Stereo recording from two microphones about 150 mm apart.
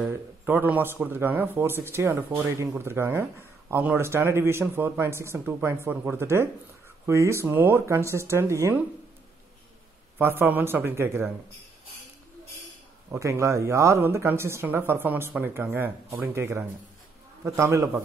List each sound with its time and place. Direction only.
0.0 s speech: 15° right (ahead or behind)
10.1 s speech: 15° right (ahead or behind)
13.1 s speech: 20° right (ahead or behind)